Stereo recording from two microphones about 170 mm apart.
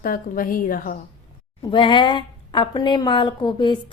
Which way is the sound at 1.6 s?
30° left (ahead or behind).